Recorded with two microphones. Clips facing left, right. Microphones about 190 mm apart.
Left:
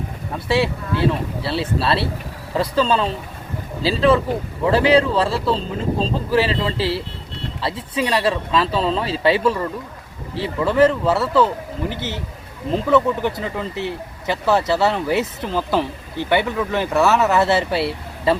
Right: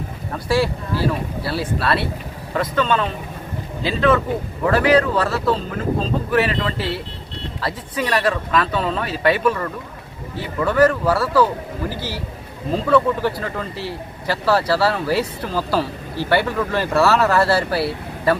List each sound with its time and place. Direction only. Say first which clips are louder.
0.4 s speech: even; 25° left (ahead or behind)